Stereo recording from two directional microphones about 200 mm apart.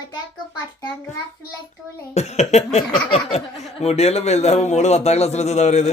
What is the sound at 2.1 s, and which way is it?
Speech, 35° left (ahead or behind).